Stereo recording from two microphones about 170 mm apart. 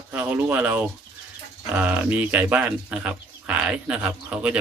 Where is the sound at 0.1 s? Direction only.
10° right (ahead or behind).